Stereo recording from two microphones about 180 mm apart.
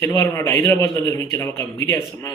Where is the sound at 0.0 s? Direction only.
15° left (ahead or behind).